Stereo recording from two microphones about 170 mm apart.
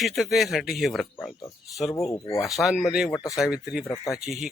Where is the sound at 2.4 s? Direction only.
Centre (ahead or behind).